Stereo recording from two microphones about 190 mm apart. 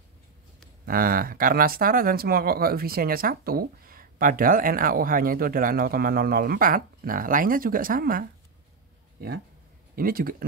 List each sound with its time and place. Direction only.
0.8 s speech: 50° right (ahead or behind)
9.9 s speech: 50° right (ahead or behind)